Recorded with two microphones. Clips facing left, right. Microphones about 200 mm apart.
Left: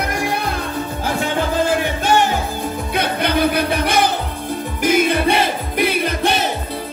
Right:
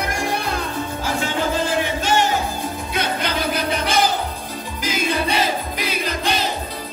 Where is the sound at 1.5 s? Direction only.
55° left (ahead or behind).